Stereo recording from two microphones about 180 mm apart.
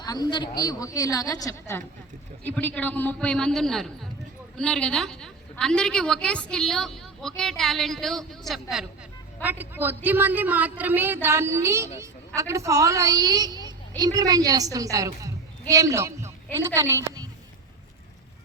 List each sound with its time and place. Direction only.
0.0 s a woman's voice: 20° left (ahead or behind); by 8.6 s centre (ahead or behind)
9.4 s a woman's voice: 10° right (ahead or behind)